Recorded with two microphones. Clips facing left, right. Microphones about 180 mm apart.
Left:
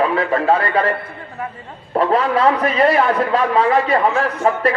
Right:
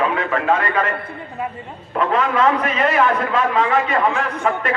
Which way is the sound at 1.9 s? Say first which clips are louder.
Left 2 dB; 35° left (ahead or behind).